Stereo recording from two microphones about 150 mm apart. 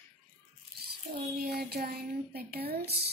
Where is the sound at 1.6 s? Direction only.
90° right.